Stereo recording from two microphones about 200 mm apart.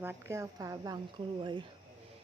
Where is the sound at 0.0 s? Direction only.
10° right (ahead or behind).